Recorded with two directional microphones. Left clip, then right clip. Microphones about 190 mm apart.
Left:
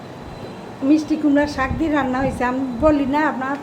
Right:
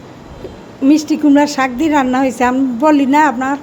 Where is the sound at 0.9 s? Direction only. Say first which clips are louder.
Right 6 dB; 55° right (ahead or behind).